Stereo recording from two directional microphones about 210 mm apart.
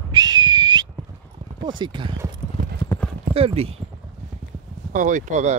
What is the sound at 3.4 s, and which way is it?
Speech, 30° right (ahead or behind).